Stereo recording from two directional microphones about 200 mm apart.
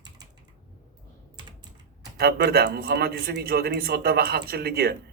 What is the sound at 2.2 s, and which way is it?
A man's voice, 50° right (ahead or behind).